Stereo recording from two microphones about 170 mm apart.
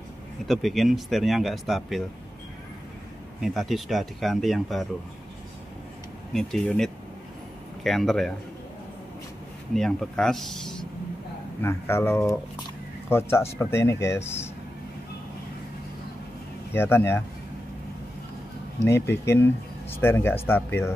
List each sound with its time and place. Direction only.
0.5 s speech: centre (ahead or behind)
3.3 s speech: centre (ahead or behind)
6.3 s speech: 5° left (ahead or behind)
9.8 s speech: 5° left (ahead or behind)
11.6 s speech: 15° left (ahead or behind)
16.7 s speech: 15° left (ahead or behind)
18.8 s speech: 15° left (ahead or behind)